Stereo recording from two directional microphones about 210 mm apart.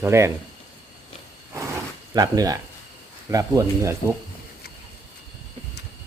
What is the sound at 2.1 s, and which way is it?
Speech, 15° right (ahead or behind).